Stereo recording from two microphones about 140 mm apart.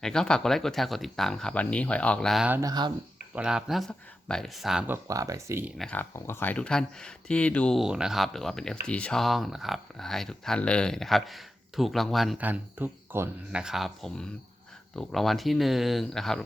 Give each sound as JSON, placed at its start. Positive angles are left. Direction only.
{"t": 0.0, "sound": "speech", "side_deg": 5}
{"t": 2.5, "sound": "speech", "side_deg": -25}
{"t": 3.3, "sound": "speech", "side_deg": -5}
{"t": 5.0, "sound": "speech", "side_deg": -25}
{"t": 5.7, "sound": "speech", "side_deg": 5}
{"t": 6.0, "sound": "speech", "side_deg": 15}
{"t": 7.8, "sound": "speech", "side_deg": -5}
{"t": 12.4, "sound": "speech", "side_deg": -10}